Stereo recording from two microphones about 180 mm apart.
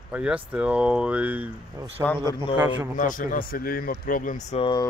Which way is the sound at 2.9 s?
45° left (ahead or behind).